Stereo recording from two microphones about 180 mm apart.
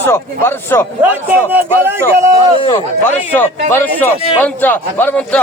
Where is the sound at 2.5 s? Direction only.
30° left (ahead or behind).